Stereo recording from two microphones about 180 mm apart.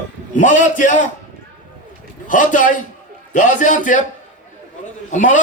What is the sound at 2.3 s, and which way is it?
A man's voice, 45° left (ahead or behind).